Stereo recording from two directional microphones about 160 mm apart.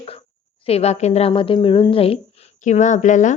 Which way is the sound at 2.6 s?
50° left (ahead or behind).